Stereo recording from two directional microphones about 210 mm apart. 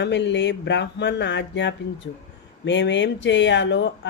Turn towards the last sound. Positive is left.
turn(degrees=55)  # may be behind; listen again after turning